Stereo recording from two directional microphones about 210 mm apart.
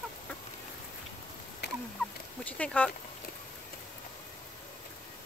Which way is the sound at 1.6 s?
55° left (ahead or behind).